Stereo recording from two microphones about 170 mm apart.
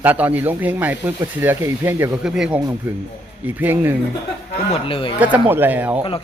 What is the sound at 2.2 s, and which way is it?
Speech, 5° right (ahead or behind).